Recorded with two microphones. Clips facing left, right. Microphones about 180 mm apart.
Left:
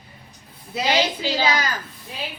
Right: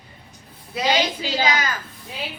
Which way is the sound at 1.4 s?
35° left (ahead or behind).